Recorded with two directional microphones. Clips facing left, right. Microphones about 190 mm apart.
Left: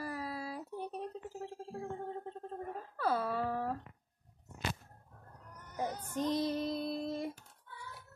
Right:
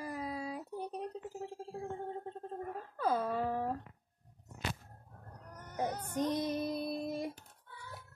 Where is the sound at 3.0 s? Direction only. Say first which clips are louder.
Right 1 dB; 15° right (ahead or behind).